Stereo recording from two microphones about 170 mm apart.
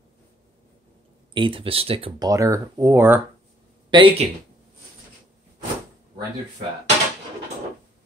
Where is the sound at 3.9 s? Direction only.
25° right (ahead or behind).